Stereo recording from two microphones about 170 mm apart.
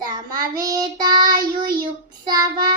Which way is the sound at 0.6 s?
25° right (ahead or behind).